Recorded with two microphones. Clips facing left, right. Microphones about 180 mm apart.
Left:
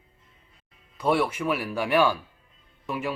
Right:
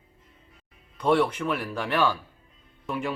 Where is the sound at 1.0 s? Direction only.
10° left (ahead or behind).